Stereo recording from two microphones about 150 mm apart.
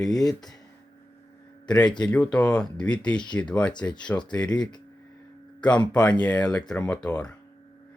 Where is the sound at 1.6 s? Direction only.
5° left (ahead or behind).